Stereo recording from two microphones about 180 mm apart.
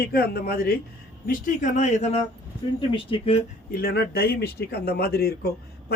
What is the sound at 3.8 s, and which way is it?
Speech, 60° left (ahead or behind).